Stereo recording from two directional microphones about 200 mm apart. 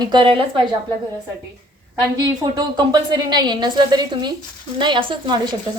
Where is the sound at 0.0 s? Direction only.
25° right (ahead or behind).